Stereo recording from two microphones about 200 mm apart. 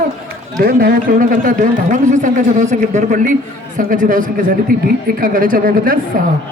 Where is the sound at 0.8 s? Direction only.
45° right (ahead or behind).